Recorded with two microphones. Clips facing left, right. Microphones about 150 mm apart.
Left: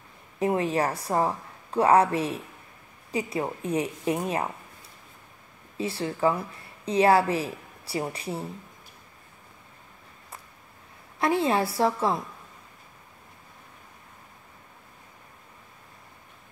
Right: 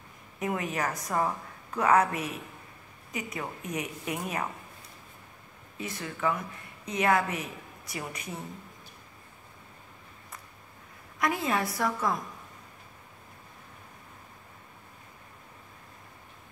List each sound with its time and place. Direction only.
0.4 s a woman's voice: 30° left (ahead or behind)
5.8 s a woman's voice: 30° left (ahead or behind)
11.1 s a woman's voice: 30° left (ahead or behind)